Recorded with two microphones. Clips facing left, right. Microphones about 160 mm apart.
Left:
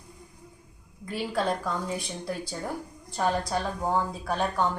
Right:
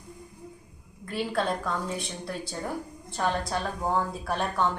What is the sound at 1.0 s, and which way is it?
Speech, centre (ahead or behind).